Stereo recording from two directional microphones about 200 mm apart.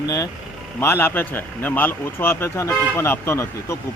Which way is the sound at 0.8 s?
10° left (ahead or behind).